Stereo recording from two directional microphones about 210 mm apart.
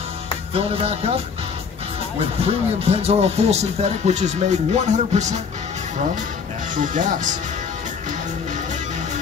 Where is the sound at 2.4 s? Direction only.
30° right (ahead or behind).